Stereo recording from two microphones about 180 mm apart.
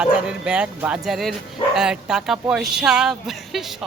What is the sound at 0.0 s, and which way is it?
Speech, 5° right (ahead or behind).